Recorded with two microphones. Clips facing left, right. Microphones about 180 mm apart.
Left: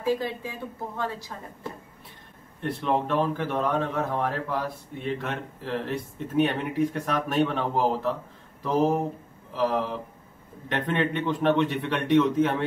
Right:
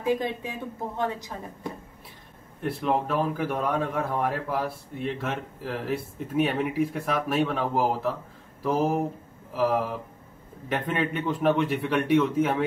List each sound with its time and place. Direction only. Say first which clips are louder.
0.0 s speech: right 1 dB; 20° right (ahead or behind)
2.6 s speech: even; 5° right (ahead or behind)
9.5 s speech: right 1 dB; 10° right (ahead or behind)